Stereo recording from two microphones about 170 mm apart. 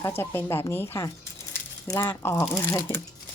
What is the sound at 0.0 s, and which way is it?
Speech, 15° left (ahead or behind).